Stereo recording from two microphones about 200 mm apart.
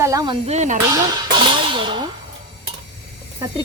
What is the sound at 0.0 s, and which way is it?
Speech, 15° right (ahead or behind).